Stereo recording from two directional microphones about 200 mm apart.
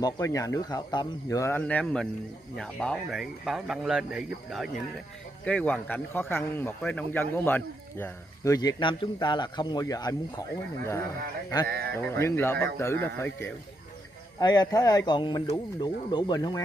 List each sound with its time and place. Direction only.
0.0 s a man's voice: 15° left (ahead or behind)
12.0 s a man's voice: 10° left (ahead or behind)